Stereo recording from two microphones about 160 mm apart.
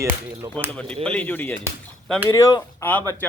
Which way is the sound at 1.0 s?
10° left (ahead or behind).